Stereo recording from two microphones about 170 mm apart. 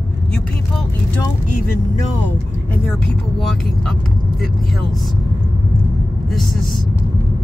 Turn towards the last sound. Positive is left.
turn(degrees=0)  # may be behind; listen again after turning